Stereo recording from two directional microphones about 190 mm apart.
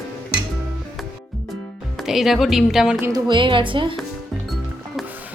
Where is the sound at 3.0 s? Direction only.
20° right (ahead or behind).